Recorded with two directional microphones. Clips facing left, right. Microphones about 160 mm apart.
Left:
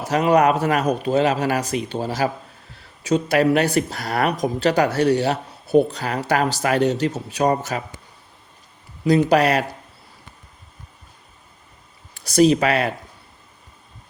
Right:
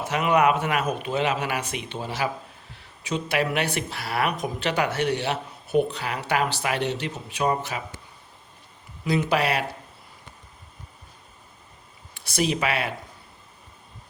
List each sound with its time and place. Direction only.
0.0 s speech: 40° left (ahead or behind)
9.0 s speech: 40° left (ahead or behind)
12.1 s speech: 40° left (ahead or behind)